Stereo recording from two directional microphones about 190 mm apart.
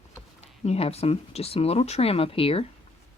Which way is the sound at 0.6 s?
35° left (ahead or behind).